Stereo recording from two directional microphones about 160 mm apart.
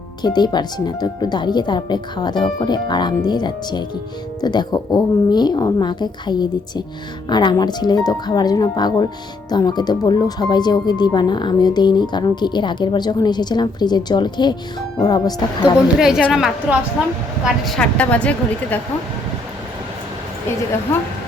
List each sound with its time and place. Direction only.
0.2 s speech: 25° left (ahead or behind)
16.0 s a woman's voice: 5° right (ahead or behind)